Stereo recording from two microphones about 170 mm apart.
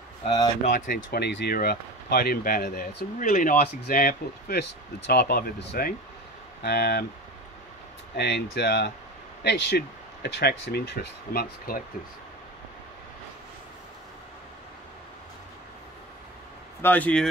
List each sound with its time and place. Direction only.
0.7 s speech: 55° left (ahead or behind)
3.2 s speech: 55° left (ahead or behind); by 7.1 s 70° left (ahead or behind)
8.2 s speech: 75° left (ahead or behind); by 11.8 s 60° left (ahead or behind)
16.8 s speech: 10° left (ahead or behind)